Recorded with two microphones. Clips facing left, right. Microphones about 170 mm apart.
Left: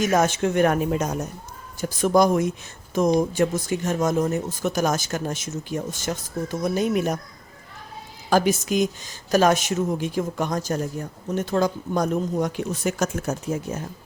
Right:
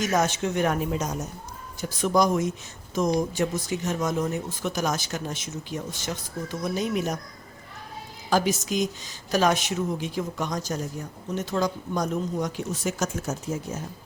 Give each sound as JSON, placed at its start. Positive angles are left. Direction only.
{"t": 0.0, "sound": "speech", "side_deg": 50}
{"t": 8.3, "sound": "speech", "side_deg": 55}